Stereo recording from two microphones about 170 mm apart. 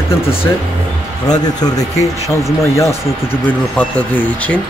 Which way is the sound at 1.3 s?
20° left (ahead or behind).